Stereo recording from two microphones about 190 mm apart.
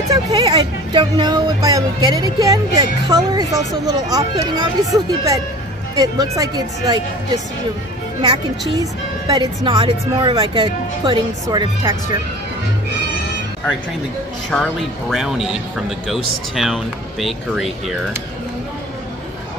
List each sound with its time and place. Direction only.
0.1 s speech: 20° right (ahead or behind)
9.3 s speech: 20° right (ahead or behind)
14.5 s speech: 5° left (ahead or behind)
16.5 s speech: centre (ahead or behind)